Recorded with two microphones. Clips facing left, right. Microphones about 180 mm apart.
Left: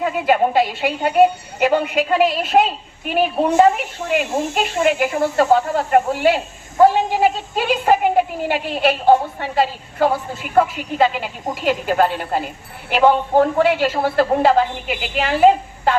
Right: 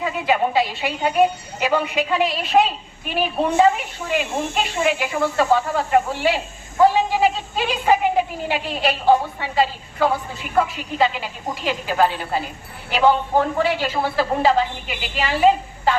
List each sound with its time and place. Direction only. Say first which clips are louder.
0.0 s a woman's voice: left 4 dB; 50° left (ahead or behind)